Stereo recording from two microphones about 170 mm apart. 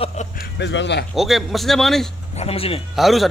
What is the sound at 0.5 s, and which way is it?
Speech, 90° left.